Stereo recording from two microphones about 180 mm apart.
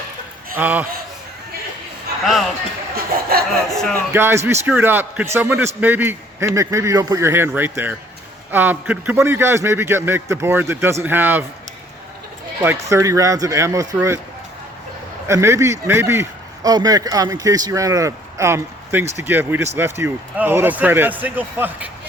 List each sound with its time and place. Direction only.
0.5 s a man's voice: 10° right (ahead or behind)
2.2 s speech: centre (ahead or behind)
2.9 s a sound: 55° right (ahead or behind)
3.8 s speech: centre (ahead or behind)
4.1 s a man's voice: 15° right (ahead or behind)
12.6 s a man's voice: 15° right (ahead or behind)
15.3 s a man's voice: 15° right (ahead or behind)